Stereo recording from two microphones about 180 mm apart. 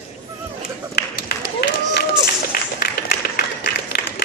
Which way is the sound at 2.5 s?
60° left (ahead or behind).